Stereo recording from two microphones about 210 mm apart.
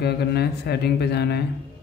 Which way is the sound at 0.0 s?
50° left (ahead or behind).